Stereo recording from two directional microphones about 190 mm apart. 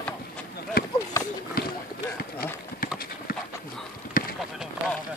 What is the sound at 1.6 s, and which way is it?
Run, 50° left (ahead or behind).